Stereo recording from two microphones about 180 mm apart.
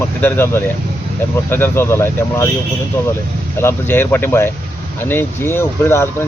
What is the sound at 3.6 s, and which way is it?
Speech, 10° left (ahead or behind).